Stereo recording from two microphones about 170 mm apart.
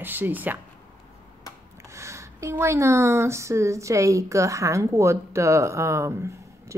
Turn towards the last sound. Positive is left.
turn(degrees=-15)  # may be behind; listen again after turning